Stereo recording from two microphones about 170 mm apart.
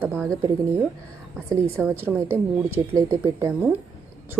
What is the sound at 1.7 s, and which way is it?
A woman's voice, 10° right (ahead or behind).